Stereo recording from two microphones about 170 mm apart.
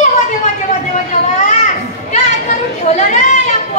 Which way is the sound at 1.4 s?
45° left (ahead or behind).